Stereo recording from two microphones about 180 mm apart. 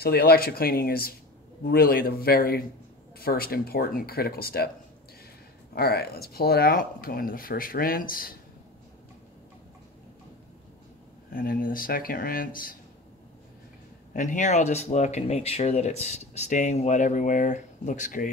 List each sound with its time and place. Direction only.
0.0 s speech: 60° left (ahead or behind)
5.8 s speech: 60° left (ahead or behind)
11.3 s speech: 55° left (ahead or behind)
14.1 s speech: 45° left (ahead or behind)